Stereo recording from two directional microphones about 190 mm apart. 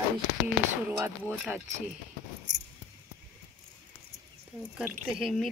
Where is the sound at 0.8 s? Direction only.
15° right (ahead or behind).